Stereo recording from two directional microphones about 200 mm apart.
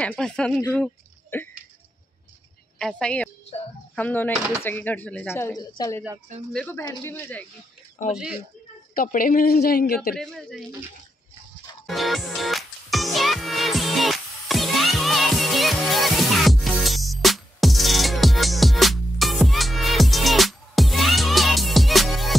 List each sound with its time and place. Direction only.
0.0 s speech: 5° left (ahead or behind)
2.8 s speech: 5° left (ahead or behind)
6.5 s speech: 5° left (ahead or behind)
8.1 s speech: 5° right (ahead or behind)
8.9 s speech: 45° left (ahead or behind)
10.1 s speech: centre (ahead or behind)
11.8 s music: centre (ahead or behind)